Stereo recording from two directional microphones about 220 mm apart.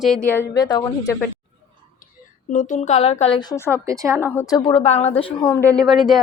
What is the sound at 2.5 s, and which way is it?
Speech, 35° left (ahead or behind).